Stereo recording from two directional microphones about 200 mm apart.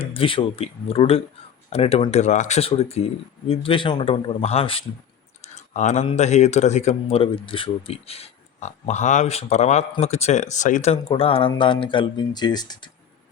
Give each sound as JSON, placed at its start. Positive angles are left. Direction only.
{"t": 0.0, "sound": "speech", "side_deg": 25}